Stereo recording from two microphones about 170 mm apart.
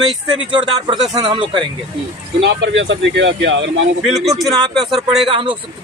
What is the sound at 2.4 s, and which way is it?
Speech, 90° right.